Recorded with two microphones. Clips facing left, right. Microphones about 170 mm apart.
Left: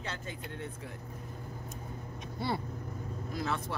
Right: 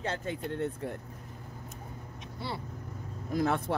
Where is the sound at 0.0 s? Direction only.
50° right (ahead or behind).